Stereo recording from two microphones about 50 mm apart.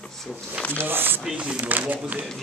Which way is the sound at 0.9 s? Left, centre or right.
Right.